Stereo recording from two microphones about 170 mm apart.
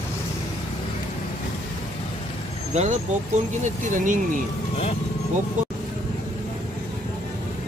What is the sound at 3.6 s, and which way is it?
Speech, 50° right (ahead or behind).